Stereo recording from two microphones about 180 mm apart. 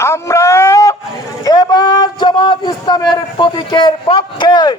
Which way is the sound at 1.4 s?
20° left (ahead or behind).